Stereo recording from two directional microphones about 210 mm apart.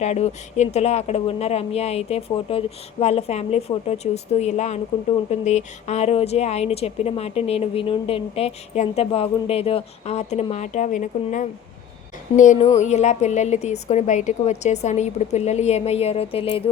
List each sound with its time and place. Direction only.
0.0 s a woman's voice: 30° left (ahead or behind)